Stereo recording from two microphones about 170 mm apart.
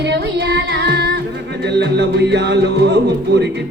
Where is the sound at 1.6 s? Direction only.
90° right.